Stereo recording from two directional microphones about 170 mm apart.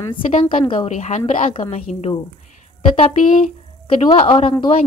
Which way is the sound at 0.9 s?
40° left (ahead or behind).